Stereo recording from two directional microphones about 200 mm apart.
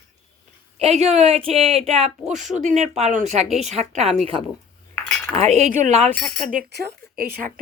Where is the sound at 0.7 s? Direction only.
30° right (ahead or behind).